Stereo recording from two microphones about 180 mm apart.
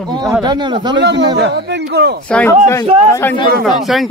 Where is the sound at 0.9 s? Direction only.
80° right.